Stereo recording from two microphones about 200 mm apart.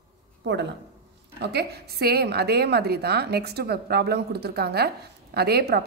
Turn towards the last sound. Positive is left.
turn(degrees=-50)  # may be behind; listen again after turning